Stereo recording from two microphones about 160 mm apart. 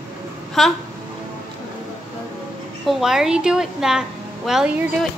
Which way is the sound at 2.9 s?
5° right (ahead or behind).